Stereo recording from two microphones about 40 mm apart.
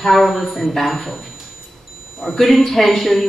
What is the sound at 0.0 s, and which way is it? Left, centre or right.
Speech, centre.